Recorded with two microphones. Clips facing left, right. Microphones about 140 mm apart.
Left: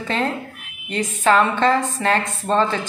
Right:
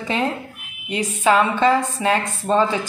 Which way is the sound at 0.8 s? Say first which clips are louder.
Even; 10° right (ahead or behind).